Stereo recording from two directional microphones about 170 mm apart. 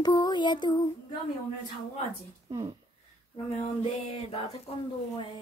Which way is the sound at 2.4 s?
20° right (ahead or behind).